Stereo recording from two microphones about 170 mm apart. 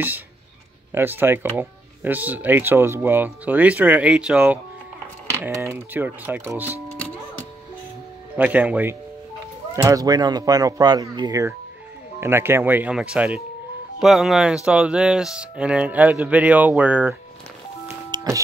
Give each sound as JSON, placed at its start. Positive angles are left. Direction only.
{"t": 0.9, "sound": "speech", "side_deg": -10}
{"t": 8.4, "sound": "speech", "side_deg": -10}
{"t": 17.8, "sound": "music", "side_deg": -20}